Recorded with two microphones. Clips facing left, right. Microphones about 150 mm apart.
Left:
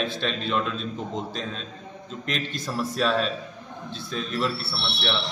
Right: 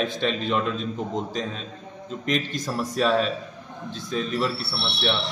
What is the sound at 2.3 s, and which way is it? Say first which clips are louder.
A man's voice: right 4 dB; 10° right (ahead or behind).